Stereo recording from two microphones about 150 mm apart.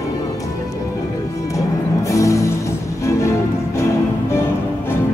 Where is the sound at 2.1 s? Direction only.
20° left (ahead or behind).